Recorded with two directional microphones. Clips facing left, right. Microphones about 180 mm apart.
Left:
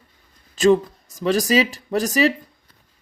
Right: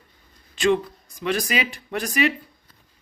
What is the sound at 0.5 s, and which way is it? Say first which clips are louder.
Speech: left 5 dB; 40° left (ahead or behind).